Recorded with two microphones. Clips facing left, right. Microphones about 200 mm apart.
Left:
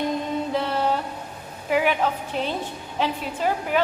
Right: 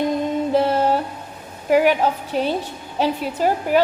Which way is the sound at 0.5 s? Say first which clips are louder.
Right 7 dB; 45° right (ahead or behind).